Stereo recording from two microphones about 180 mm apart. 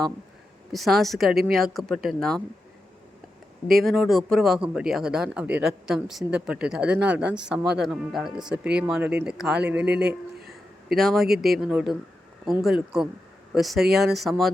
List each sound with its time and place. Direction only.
0.7 s speech: centre (ahead or behind)
3.7 s a man's voice: centre (ahead or behind)
9.9 s speech: 65° right (ahead or behind)
10.9 s speech: centre (ahead or behind)